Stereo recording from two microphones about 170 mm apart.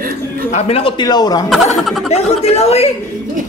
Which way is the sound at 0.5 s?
35° left (ahead or behind).